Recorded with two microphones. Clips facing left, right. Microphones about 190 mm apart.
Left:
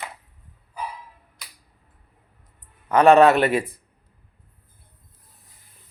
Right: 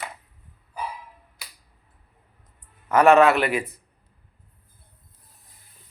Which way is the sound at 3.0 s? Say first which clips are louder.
Left 2 dB; 35° left (ahead or behind).